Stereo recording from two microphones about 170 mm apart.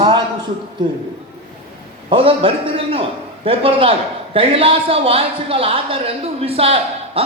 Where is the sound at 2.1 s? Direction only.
30° right (ahead or behind).